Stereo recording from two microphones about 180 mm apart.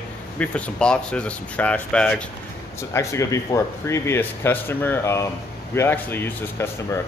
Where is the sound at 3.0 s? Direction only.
15° left (ahead or behind).